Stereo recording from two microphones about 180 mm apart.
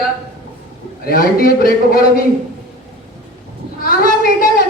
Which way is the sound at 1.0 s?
55° left (ahead or behind).